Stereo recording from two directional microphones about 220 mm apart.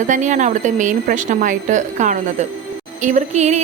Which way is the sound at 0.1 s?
35° right (ahead or behind).